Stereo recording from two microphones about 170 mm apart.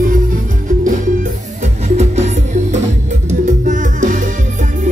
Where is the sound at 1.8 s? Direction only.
40° right (ahead or behind).